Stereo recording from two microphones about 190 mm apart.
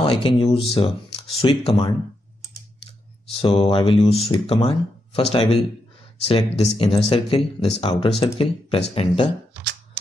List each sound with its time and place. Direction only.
0.0 s speech: 30° left (ahead or behind)
3.3 s speech: 25° left (ahead or behind)